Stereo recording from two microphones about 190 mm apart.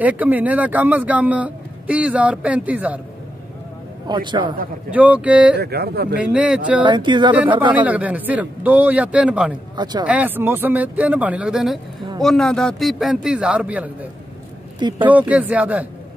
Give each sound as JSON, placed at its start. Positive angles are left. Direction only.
{"t": 0.0, "sound": "a man's voice", "side_deg": -10}
{"t": 4.1, "sound": "speech", "side_deg": -25}
{"t": 4.9, "sound": "a man's voice", "side_deg": -5}
{"t": 5.6, "sound": "speech", "side_deg": -55}
{"t": 6.1, "sound": "a man's voice", "side_deg": -5}
{"t": 6.8, "sound": "speech", "side_deg": -25}
{"t": 7.7, "sound": "a man's voice", "side_deg": -10}
{"t": 14.8, "sound": "speech", "side_deg": -25}
{"t": 15.0, "sound": "a man's voice", "side_deg": -10}